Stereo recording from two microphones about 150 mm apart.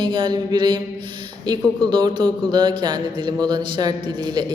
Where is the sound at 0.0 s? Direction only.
30° right (ahead or behind).